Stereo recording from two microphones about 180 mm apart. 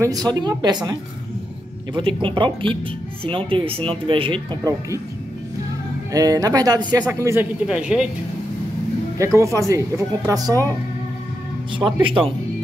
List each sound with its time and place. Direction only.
0.0 s speech: 20° right (ahead or behind)
2.2 s speech: 25° right (ahead or behind)
6.1 s speech: 20° right (ahead or behind)
7.6 s speech: 5° right (ahead or behind)
9.2 s speech: 15° right (ahead or behind)
11.8 s speech: 30° right (ahead or behind)